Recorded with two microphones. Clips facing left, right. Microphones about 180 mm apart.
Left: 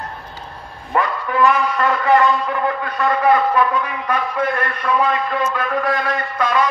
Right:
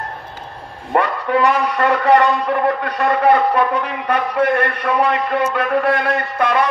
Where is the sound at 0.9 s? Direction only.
60° right (ahead or behind).